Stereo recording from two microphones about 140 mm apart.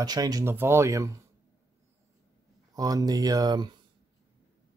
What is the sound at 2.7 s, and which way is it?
Speech, 25° right (ahead or behind).